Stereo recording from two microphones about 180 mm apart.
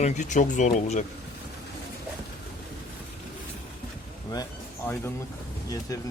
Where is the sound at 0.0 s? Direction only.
40° left (ahead or behind).